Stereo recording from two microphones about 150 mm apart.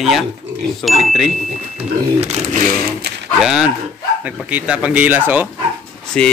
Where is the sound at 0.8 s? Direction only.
Centre (ahead or behind).